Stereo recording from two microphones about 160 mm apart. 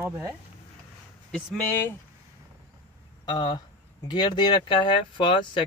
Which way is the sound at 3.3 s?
30° left (ahead or behind).